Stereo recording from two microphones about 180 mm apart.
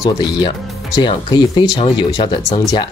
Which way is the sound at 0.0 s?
20° left (ahead or behind).